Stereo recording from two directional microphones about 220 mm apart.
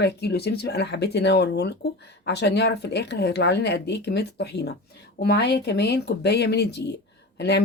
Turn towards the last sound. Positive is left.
turn(degrees=50)  # may be behind; listen again after turning